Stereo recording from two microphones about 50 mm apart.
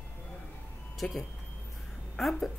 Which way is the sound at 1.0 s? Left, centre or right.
Left.